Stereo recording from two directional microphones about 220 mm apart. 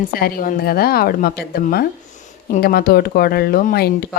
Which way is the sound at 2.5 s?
45° left (ahead or behind).